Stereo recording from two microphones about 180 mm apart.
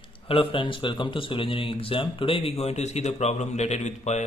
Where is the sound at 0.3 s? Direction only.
30° left (ahead or behind).